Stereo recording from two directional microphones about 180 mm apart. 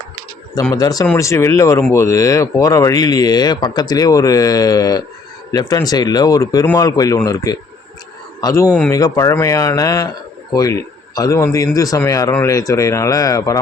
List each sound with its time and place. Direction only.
0.7 s a man's voice: 20° left (ahead or behind)